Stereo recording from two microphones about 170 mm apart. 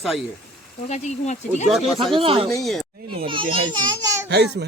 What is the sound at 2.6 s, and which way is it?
Speech, centre (ahead or behind).